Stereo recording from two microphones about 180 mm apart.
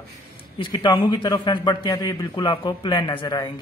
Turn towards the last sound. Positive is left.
turn(degrees=25)  # may be behind; listen again after turning